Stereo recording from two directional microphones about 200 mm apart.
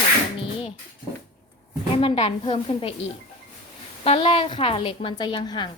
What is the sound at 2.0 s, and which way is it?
Speech, 30° left (ahead or behind).